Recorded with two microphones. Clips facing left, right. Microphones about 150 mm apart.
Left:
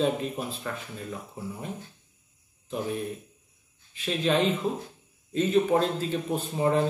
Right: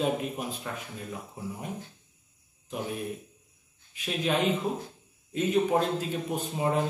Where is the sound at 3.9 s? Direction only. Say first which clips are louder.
Left 3 dB; 10° right (ahead or behind).